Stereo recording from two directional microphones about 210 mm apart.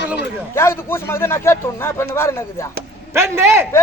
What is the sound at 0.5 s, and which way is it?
A man's voice, 10° left (ahead or behind).